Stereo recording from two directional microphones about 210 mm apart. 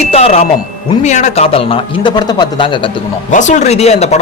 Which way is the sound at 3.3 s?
35° left (ahead or behind).